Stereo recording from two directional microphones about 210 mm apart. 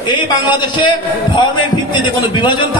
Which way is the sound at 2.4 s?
20° left (ahead or behind).